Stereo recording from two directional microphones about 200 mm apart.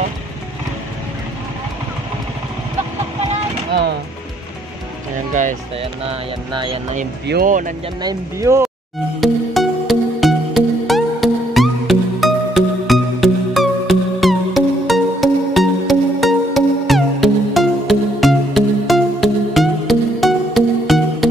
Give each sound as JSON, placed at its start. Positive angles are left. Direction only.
{"t": 5.3, "sound": "speech", "side_deg": -40}
{"t": 7.2, "sound": "speech", "side_deg": -45}
{"t": 8.0, "sound": "speech", "side_deg": -15}
{"t": 9.2, "sound": "music", "side_deg": 0}